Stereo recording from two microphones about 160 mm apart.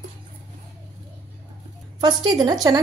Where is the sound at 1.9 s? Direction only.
25° right (ahead or behind).